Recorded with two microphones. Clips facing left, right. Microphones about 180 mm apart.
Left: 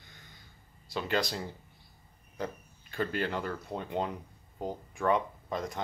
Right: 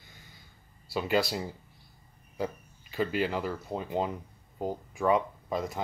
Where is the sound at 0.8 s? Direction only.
10° right (ahead or behind).